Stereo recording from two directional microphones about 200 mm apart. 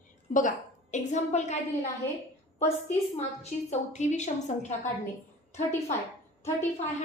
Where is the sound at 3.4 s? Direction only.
35° left (ahead or behind).